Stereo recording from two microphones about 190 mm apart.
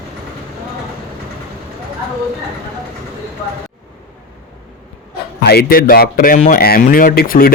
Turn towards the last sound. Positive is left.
turn(degrees=50)  # may be behind; listen again after turning